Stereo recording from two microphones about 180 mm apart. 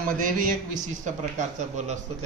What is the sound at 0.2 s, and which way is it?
A man's voice, 50° right (ahead or behind).